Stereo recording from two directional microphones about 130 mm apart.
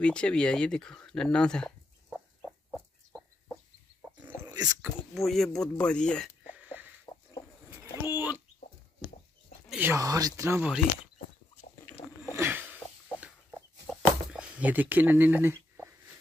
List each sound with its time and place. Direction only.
0.0 s speech: 10° left (ahead or behind)
4.2 s dog: 15° right (ahead or behind)
5.1 s speech: centre (ahead or behind)
6.4 s a sound: 10° right (ahead or behind)
8.0 s speech: 15° right (ahead or behind)
9.8 s speech: 20° right (ahead or behind)
12.3 s a sound: 15° right (ahead or behind)